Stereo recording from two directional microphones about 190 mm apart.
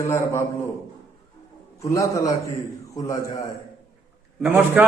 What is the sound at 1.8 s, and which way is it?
A man's voice, 15° left (ahead or behind).